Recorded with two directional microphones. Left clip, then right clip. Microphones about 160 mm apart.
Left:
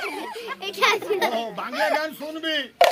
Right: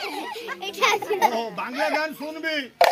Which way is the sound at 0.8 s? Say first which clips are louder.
Even; 35° left (ahead or behind).